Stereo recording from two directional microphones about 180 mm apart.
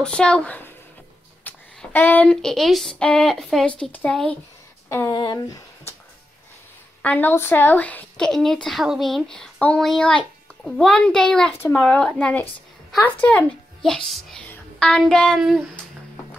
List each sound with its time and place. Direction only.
0.0 s speech: 5° left (ahead or behind)
4.8 s a sound: 15° left (ahead or behind)
5.2 s speech: 20° left (ahead or behind)
7.0 s speech: 10° left (ahead or behind)